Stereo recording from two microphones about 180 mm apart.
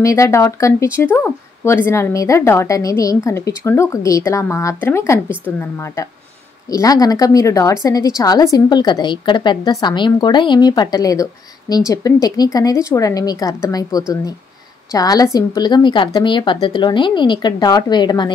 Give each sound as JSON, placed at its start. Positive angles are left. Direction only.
{"t": 0.0, "sound": "speech", "side_deg": 15}
{"t": 6.7, "sound": "speech", "side_deg": 20}